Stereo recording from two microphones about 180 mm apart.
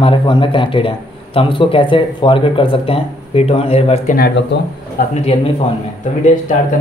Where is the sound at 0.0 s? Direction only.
30° left (ahead or behind).